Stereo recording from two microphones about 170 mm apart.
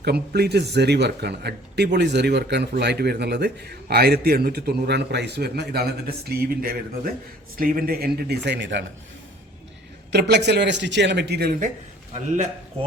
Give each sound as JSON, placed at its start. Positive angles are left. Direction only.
{"t": 0.0, "sound": "a man's voice", "side_deg": -70}
{"t": 10.1, "sound": "a man's voice", "side_deg": -75}